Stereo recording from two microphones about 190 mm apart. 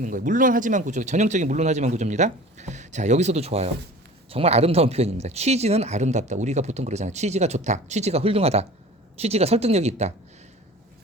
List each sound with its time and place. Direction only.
0.0 s speech: 45° right (ahead or behind)